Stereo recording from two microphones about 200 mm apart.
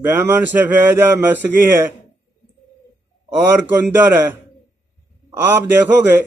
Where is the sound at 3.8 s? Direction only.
10° right (ahead or behind).